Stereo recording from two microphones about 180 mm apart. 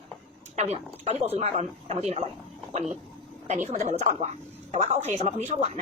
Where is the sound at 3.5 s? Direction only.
40° right (ahead or behind).